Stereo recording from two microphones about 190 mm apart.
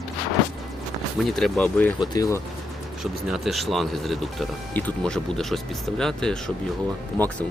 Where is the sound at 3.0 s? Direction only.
Centre (ahead or behind).